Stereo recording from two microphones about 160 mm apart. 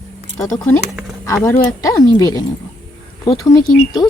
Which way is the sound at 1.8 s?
25° left (ahead or behind).